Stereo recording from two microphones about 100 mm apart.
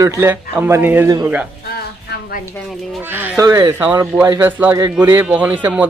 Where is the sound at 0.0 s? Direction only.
35° right (ahead or behind); by 1.0 s 15° right (ahead or behind).